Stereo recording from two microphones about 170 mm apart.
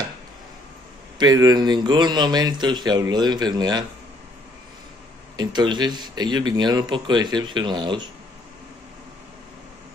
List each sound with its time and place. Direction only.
1.1 s a man's voice: 25° right (ahead or behind)
5.4 s a man's voice: 25° right (ahead or behind)